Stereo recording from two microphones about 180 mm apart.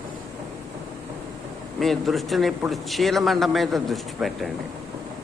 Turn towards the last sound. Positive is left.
turn(degrees=0)  # may be behind; listen again after turning